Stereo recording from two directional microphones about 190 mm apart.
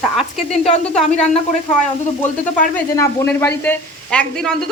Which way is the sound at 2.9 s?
10° left (ahead or behind).